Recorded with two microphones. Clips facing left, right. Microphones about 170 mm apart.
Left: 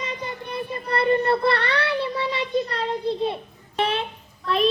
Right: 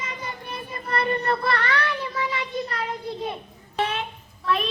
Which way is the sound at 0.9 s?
25° left (ahead or behind).